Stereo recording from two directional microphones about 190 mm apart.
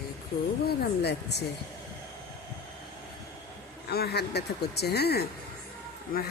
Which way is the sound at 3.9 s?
55° left (ahead or behind).